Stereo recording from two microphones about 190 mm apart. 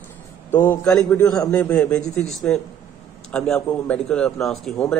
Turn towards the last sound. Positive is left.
turn(degrees=0)  # may be behind; listen again after turning